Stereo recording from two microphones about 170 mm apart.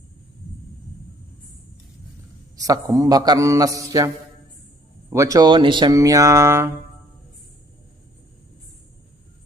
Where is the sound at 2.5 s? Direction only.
20° right (ahead or behind).